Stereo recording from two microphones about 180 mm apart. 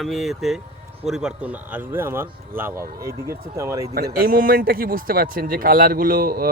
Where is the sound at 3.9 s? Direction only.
60° right (ahead or behind).